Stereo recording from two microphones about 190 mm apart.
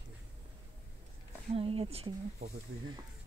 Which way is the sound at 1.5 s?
30° right (ahead or behind).